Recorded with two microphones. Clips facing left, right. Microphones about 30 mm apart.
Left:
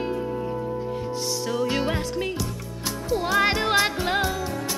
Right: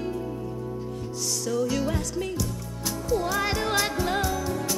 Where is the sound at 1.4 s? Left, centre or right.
Left.